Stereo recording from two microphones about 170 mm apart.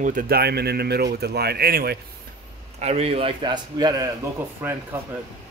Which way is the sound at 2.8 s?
40° right (ahead or behind).